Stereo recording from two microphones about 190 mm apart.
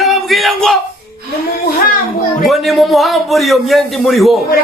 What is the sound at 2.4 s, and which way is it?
A man's voice, centre (ahead or behind).